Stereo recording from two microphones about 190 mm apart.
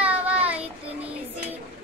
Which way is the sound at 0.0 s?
10° right (ahead or behind).